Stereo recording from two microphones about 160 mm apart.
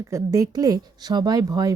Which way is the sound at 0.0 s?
20° right (ahead or behind).